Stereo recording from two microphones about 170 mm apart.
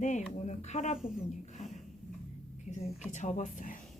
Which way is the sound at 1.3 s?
45° left (ahead or behind).